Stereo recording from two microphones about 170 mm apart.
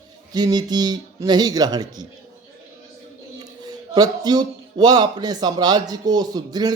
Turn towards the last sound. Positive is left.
turn(degrees=-25)  # may be behind; listen again after turning